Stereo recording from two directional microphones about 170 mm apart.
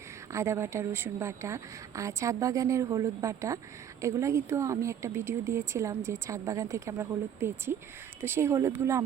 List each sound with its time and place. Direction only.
0.3 s speech: 15° right (ahead or behind)